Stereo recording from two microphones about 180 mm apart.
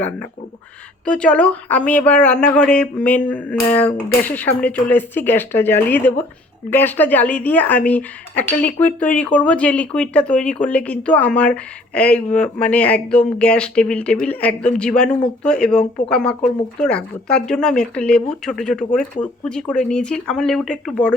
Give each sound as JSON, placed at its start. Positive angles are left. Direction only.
{"t": 1.0, "sound": "speech", "side_deg": 5}